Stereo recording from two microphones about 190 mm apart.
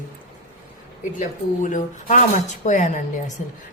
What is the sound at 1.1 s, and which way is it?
A woman's voice, 40° left (ahead or behind).